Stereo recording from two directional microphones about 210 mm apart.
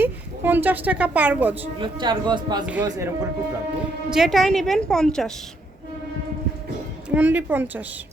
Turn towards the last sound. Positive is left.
turn(degrees=-10)  # may be behind; listen again after turning